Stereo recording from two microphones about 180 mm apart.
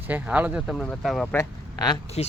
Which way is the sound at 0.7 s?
5° left (ahead or behind).